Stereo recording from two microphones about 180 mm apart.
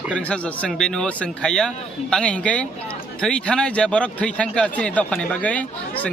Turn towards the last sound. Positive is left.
turn(degrees=10)  # may be behind; listen again after turning